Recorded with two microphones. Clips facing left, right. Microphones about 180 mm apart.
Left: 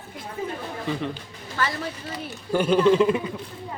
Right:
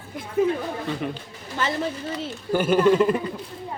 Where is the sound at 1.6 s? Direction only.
20° right (ahead or behind).